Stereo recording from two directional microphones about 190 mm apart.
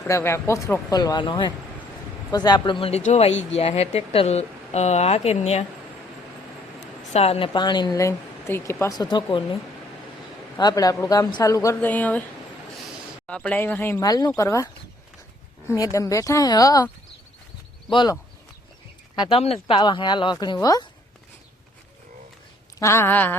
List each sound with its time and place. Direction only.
0.1 s speech: 15° left (ahead or behind)
2.8 s speech: 35° left (ahead or behind)
7.1 s speech: 30° left (ahead or behind)
10.6 s speech: 20° left (ahead or behind)
13.2 s speech: 5° left (ahead or behind)
15.7 s speech: 15° left (ahead or behind)
17.9 s speech: 25° left (ahead or behind)
22.8 s speech: 15° left (ahead or behind)